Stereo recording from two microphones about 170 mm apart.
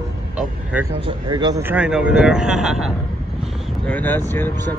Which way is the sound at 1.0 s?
25° right (ahead or behind).